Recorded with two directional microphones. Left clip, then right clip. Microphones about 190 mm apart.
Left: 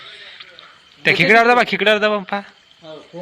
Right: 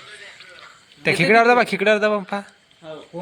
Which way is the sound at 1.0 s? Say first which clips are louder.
Left 3 dB; 5° right (ahead or behind).